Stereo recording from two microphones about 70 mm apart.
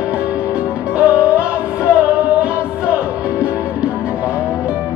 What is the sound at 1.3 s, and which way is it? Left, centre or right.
Music, centre.